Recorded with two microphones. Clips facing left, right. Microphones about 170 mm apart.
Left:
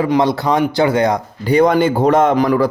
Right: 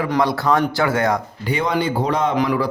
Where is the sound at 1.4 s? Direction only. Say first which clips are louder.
Left 11 dB; 40° left (ahead or behind).